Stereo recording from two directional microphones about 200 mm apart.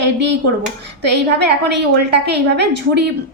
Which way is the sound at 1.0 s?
55° right (ahead or behind).